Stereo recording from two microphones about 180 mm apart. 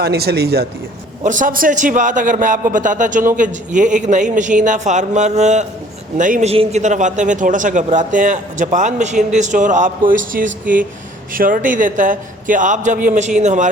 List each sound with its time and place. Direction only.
0.0 s speech: 60° right (ahead or behind)
1.2 s a man's voice: 45° right (ahead or behind)